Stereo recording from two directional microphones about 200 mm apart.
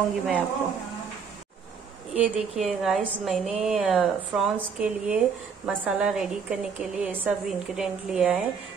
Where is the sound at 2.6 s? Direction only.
Centre (ahead or behind).